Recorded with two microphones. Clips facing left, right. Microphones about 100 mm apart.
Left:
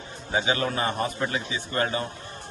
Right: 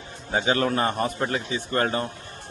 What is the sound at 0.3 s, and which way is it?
Speech, 45° right (ahead or behind).